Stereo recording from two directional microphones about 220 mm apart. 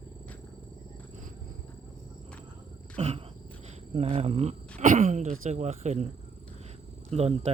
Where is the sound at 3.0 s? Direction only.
30° right (ahead or behind).